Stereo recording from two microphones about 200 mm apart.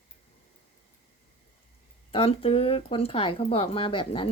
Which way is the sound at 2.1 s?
30° left (ahead or behind).